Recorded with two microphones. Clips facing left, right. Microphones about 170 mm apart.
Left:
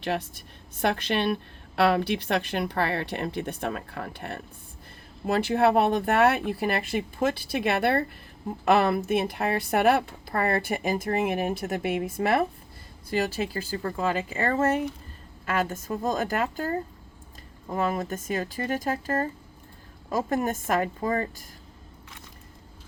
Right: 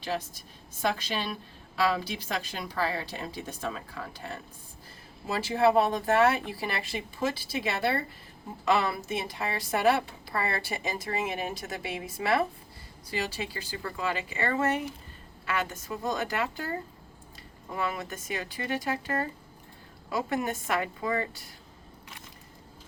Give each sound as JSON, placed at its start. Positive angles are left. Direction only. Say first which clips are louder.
{"t": 0.0, "sound": "a woman's voice", "louder": "left 4 dB", "side_deg": 60}